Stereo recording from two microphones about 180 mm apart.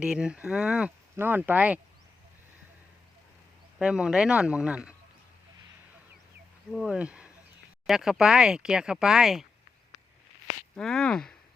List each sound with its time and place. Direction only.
0.0 s speech: 5° right (ahead or behind)
3.8 s speech: 5° right (ahead or behind)
6.7 s speech: centre (ahead or behind)
10.8 s speech: 5° left (ahead or behind)